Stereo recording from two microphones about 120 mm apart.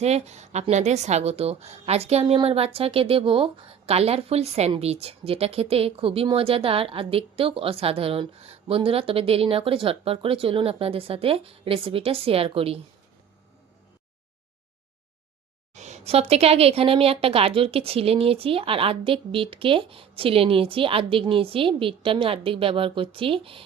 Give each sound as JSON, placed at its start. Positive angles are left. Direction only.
{"t": 0.0, "sound": "a woman's voice", "side_deg": -65}
{"t": 15.7, "sound": "speech", "side_deg": -70}